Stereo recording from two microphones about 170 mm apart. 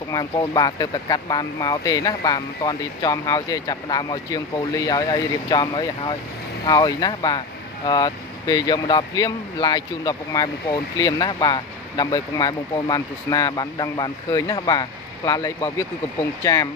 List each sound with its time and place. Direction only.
0.1 s speech: 25° left (ahead or behind)